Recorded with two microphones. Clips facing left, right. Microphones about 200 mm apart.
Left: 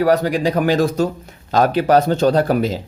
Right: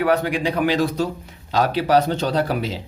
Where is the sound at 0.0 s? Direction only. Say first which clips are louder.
Left 4 dB; 40° left (ahead or behind).